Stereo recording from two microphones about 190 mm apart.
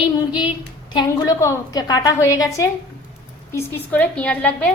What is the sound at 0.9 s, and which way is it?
A woman's voice, 20° left (ahead or behind).